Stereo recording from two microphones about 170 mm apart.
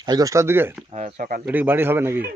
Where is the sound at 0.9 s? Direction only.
50° right (ahead or behind).